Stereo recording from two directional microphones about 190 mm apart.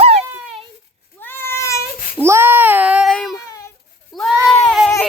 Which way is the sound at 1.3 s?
15° left (ahead or behind).